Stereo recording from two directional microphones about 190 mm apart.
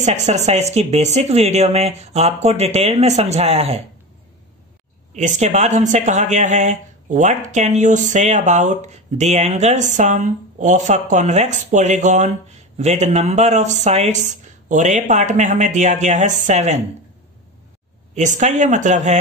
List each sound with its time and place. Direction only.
0.0 s speech: 35° right (ahead or behind)
5.1 s speech: 40° right (ahead or behind)
18.1 s speech: 40° right (ahead or behind)